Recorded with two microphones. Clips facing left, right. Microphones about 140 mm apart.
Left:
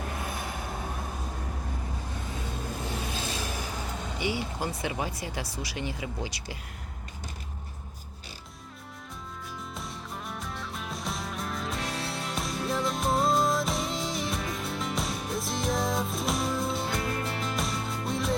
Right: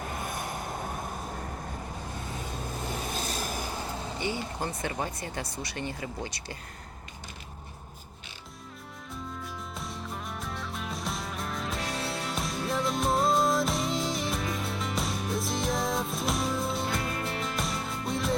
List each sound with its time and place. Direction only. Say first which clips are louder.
3.2 s vehicle: even; 40° right (ahead or behind)
4.2 s speech: left 2 dB; 10° left (ahead or behind)
9.7 s music: right 1 dB; centre (ahead or behind)